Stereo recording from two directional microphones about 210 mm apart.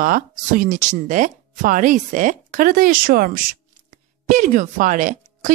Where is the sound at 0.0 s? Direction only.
40° right (ahead or behind).